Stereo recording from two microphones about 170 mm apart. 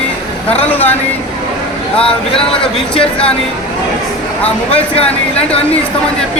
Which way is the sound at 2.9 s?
30° left (ahead or behind).